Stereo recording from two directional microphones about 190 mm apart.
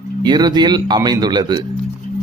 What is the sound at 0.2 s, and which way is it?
Speech, 20° right (ahead or behind).